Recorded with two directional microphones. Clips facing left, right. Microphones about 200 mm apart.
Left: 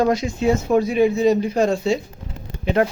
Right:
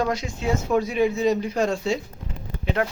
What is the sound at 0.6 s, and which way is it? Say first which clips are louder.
Speech: left 2 dB; 30° left (ahead or behind).